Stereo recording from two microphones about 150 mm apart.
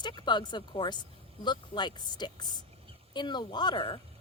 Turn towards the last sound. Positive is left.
turn(degrees=30)  # may be behind; listen again after turning